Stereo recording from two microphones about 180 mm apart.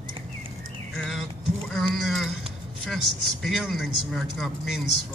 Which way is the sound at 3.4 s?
Centre (ahead or behind).